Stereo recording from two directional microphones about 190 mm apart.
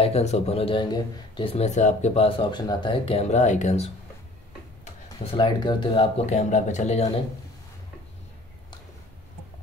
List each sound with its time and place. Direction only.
0.0 s speech: 35° left (ahead or behind)
5.4 s speech: 25° left (ahead or behind)